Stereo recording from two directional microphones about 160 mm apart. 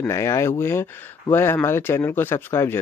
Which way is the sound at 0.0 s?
20° left (ahead or behind).